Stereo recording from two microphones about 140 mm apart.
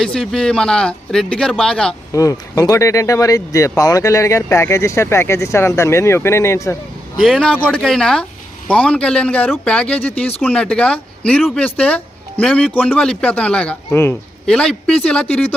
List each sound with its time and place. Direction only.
0.0 s speech: 5° left (ahead or behind)
2.1 s speech: 25° left (ahead or behind)
7.2 s speech: centre (ahead or behind)
14.4 s speech: 5° left (ahead or behind)